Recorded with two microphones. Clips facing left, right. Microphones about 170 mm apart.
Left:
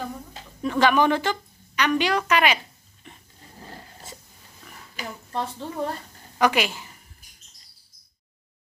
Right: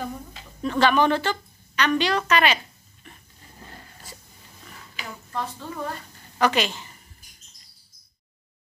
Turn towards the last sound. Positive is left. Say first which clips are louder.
# left 1 dB
turn(degrees=10)  # may be behind; listen again after turning